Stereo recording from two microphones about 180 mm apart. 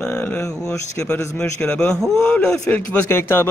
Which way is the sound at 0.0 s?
10° left (ahead or behind).